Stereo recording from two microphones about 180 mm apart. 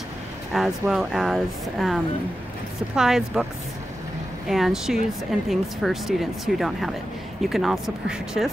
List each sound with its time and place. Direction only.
0.5 s speech: centre (ahead or behind)
3.0 s speech: centre (ahead or behind)
4.5 s speech: centre (ahead or behind)